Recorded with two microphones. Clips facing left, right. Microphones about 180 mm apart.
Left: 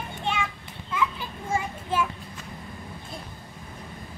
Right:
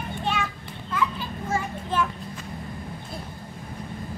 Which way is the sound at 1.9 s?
10° left (ahead or behind).